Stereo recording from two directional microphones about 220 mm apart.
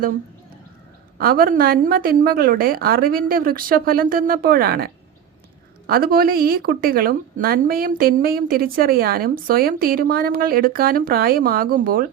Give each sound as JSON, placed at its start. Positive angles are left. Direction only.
{"t": 1.2, "sound": "a woman's voice", "side_deg": -40}
{"t": 5.9, "sound": "a woman's voice", "side_deg": -40}